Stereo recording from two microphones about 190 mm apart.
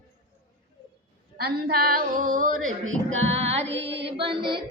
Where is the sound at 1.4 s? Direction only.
55° right (ahead or behind).